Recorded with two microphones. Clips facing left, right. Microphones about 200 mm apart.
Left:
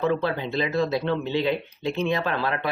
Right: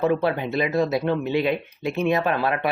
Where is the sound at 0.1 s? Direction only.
15° right (ahead or behind).